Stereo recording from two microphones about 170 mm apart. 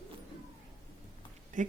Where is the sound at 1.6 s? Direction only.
45° right (ahead or behind).